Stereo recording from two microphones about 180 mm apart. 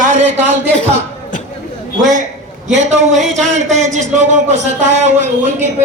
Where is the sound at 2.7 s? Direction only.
40° right (ahead or behind).